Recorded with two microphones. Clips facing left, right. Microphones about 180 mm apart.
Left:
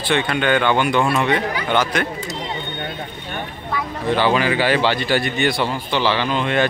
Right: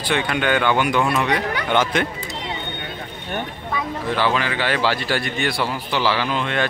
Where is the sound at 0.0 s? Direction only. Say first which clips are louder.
Left 2 dB; 10° right (ahead or behind).